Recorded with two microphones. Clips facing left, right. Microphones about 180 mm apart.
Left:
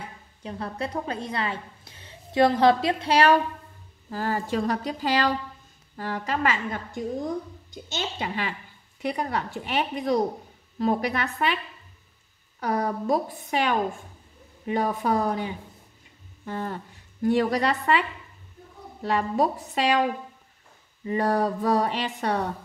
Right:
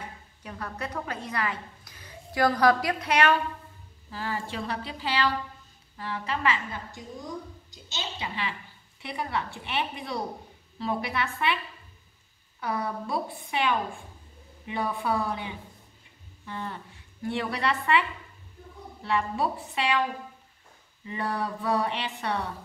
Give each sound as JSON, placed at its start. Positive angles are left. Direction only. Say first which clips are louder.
{"t": 0.4, "sound": "a woman's voice", "louder": "left 5 dB", "side_deg": 30}
{"t": 4.1, "sound": "a woman's voice", "louder": "left 6 dB", "side_deg": 45}
{"t": 12.5, "sound": "a woman's voice", "louder": "left 5 dB", "side_deg": 40}
{"t": 19.0, "sound": "a woman's voice", "louder": "left 4 dB", "side_deg": 40}
{"t": 21.0, "sound": "a woman's voice", "louder": "left 8 dB", "side_deg": 40}